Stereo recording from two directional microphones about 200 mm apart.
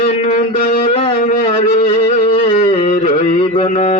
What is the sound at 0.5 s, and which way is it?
Music, 45° left (ahead or behind).